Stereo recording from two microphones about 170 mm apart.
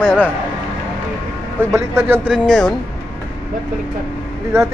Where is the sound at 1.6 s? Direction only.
15° right (ahead or behind).